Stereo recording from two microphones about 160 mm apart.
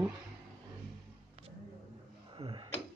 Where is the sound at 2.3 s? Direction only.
30° right (ahead or behind).